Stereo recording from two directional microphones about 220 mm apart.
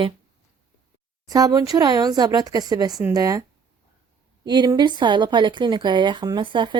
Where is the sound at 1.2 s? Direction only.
15° right (ahead or behind).